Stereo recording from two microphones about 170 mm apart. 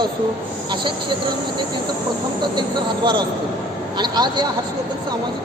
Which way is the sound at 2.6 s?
25° right (ahead or behind).